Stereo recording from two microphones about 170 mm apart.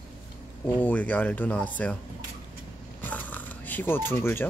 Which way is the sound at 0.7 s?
10° left (ahead or behind).